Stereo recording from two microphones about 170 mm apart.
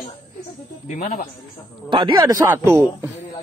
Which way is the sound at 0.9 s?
55° left (ahead or behind).